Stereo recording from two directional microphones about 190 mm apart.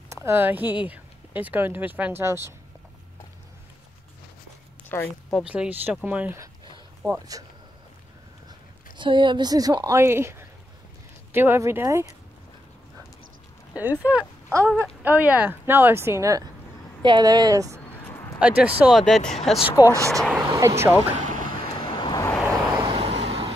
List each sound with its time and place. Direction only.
0.1 s speech: 15° right (ahead or behind)
4.8 s speech: 10° left (ahead or behind)
5.4 s speech: 5° right (ahead or behind)
8.9 s speech: 25° right (ahead or behind)
13.7 s speech: 10° right (ahead or behind)
14.6 s speech: 10° left (ahead or behind)
15.0 s speech: 5° right (ahead or behind)
18.0 s a sound: 15° left (ahead or behind)
18.4 s speech: 5° right (ahead or behind)
19.8 s speech: 15° right (ahead or behind)
21.3 s boat: 45° right (ahead or behind)
21.9 s vehicle: 20° left (ahead or behind)
22.8 s vehicle: 25° right (ahead or behind)